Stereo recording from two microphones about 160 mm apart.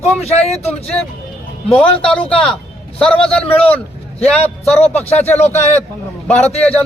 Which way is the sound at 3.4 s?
35° left (ahead or behind).